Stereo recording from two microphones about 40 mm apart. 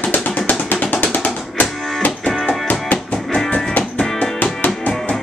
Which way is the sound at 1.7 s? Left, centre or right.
Centre.